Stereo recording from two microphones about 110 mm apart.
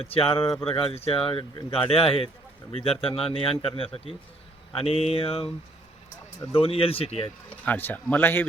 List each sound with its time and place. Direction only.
0.0 s a man's voice: 60° left (ahead or behind)
6.5 s a man's voice: 60° left (ahead or behind)
7.6 s speech: 15° left (ahead or behind)